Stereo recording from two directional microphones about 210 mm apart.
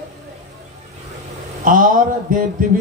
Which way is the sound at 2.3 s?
40° right (ahead or behind).